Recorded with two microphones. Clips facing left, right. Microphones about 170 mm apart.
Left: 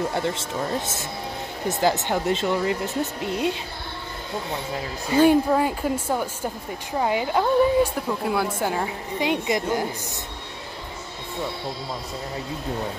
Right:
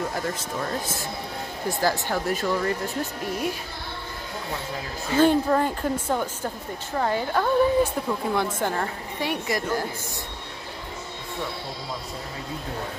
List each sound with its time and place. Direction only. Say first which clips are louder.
0.1 s speech: left 3 dB; 25° left (ahead or behind)
5.1 s a woman's voice: left 2 dB; 10° left (ahead or behind)